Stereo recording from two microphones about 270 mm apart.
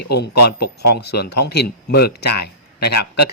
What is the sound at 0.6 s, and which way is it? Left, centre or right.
Speech, left.